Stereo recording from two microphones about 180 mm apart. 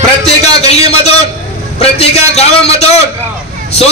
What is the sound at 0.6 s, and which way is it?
A man's voice, 35° left (ahead or behind).